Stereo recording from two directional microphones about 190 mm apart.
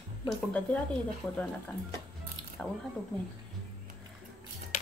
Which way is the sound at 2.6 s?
5° left (ahead or behind).